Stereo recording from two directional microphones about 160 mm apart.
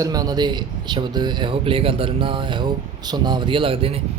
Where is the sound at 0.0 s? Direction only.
25° right (ahead or behind).